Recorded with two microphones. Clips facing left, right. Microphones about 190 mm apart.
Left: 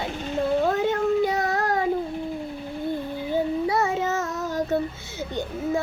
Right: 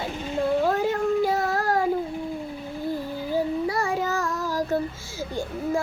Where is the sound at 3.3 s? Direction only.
20° left (ahead or behind).